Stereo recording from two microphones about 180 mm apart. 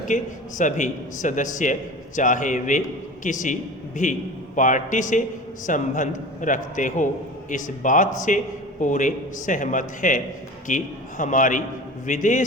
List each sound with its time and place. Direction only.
0.1 s a man's voice: 45° left (ahead or behind)